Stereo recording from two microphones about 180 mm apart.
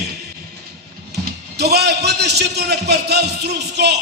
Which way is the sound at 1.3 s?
65° right (ahead or behind).